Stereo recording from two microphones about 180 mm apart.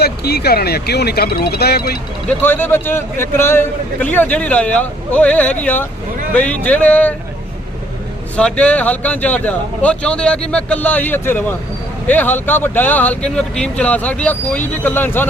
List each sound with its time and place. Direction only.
0.0 s speech: 60° left (ahead or behind)
2.4 s a man's voice: 10° left (ahead or behind)
8.4 s a man's voice: 5° left (ahead or behind)